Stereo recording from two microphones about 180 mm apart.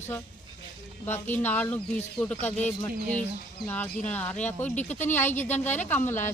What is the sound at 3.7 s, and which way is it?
A woman's voice, 10° left (ahead or behind).